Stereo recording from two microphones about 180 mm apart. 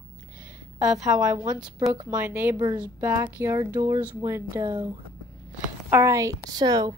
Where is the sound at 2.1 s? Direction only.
10° right (ahead or behind).